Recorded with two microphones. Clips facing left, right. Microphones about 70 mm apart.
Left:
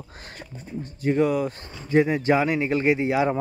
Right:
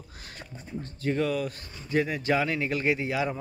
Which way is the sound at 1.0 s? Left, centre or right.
Centre.